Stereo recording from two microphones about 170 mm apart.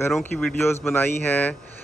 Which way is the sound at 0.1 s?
5° left (ahead or behind).